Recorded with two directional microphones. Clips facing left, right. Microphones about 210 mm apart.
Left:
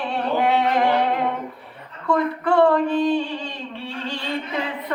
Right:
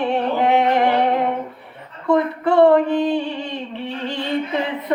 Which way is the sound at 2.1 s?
20° right (ahead or behind).